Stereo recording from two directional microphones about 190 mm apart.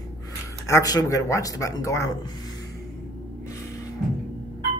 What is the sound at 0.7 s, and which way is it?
Speech, 20° left (ahead or behind).